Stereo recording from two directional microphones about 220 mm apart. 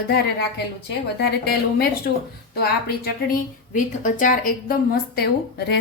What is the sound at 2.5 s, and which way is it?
A woman's voice, 45° left (ahead or behind).